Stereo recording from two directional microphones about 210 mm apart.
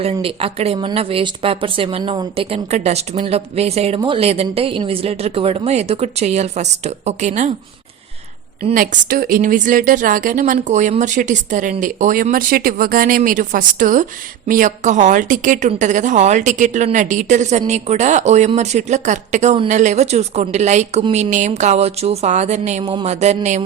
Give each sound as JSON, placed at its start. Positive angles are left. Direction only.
{"t": 0.0, "sound": "speech", "side_deg": -30}
{"t": 8.7, "sound": "speech", "side_deg": -45}